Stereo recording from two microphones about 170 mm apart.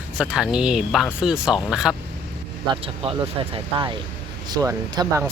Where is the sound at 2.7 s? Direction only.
35° right (ahead or behind).